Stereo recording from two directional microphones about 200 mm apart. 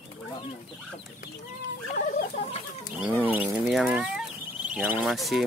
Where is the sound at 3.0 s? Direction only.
10° right (ahead or behind).